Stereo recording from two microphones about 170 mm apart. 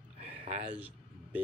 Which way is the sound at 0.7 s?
10° right (ahead or behind).